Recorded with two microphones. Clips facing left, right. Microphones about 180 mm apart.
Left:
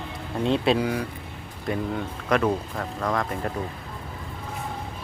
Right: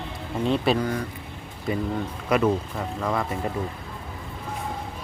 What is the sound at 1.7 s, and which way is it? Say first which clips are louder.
Speech: right 1 dB; 5° right (ahead or behind).